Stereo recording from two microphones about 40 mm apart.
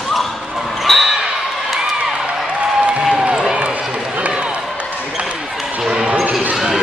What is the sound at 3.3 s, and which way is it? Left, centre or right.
Run, centre.